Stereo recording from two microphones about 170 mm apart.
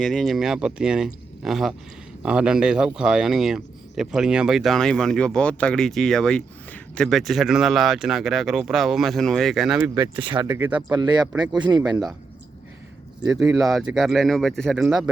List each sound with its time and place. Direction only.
0.0 s speech: centre (ahead or behind)
9.9 s speech: 25° right (ahead or behind)
10.4 s speech: 20° right (ahead or behind)
13.2 s speech: 5° right (ahead or behind)